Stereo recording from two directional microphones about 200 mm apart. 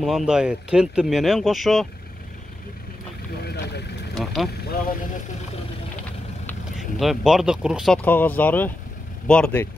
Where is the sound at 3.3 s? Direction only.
50° left (ahead or behind).